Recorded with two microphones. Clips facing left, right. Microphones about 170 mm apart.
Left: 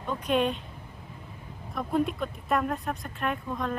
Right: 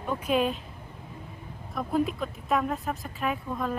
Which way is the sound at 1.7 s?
Centre (ahead or behind).